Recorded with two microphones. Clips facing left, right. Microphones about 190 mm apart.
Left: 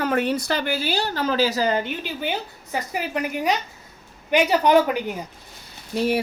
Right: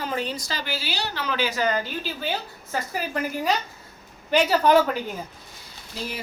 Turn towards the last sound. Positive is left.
turn(degrees=65)  # may be behind; listen again after turning